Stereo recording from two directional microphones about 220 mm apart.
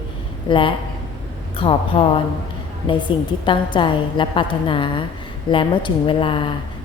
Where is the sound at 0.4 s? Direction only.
20° left (ahead or behind).